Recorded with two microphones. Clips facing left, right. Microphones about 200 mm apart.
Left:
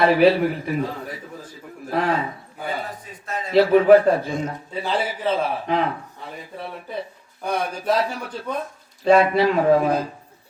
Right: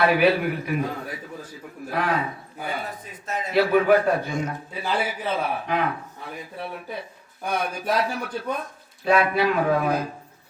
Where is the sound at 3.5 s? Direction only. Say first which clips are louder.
Left 5 dB; 25° left (ahead or behind).